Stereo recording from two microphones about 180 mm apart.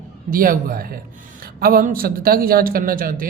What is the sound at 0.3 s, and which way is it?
A man's voice, 50° right (ahead or behind).